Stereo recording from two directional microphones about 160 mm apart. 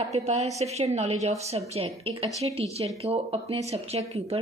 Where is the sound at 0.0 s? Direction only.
45° right (ahead or behind).